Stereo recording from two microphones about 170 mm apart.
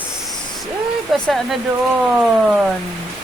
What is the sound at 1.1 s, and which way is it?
Speech, centre (ahead or behind).